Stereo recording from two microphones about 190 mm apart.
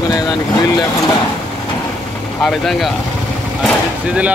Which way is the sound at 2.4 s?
Centre (ahead or behind).